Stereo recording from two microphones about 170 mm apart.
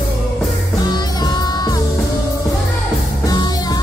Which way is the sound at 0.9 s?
25° left (ahead or behind).